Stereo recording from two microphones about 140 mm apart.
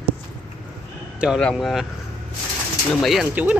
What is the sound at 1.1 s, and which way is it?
Speech, 5° right (ahead or behind).